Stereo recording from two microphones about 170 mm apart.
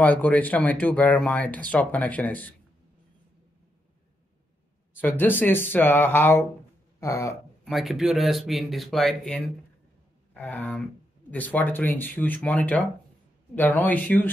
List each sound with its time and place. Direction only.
0.0 s speech: 10° left (ahead or behind)
4.9 s speech: 10° left (ahead or behind)
7.6 s speech: centre (ahead or behind)
10.3 s a sound: 10° left (ahead or behind)
11.2 s speech: 10° left (ahead or behind)